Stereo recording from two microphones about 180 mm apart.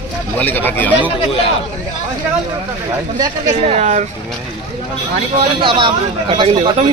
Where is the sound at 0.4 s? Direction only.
10° left (ahead or behind).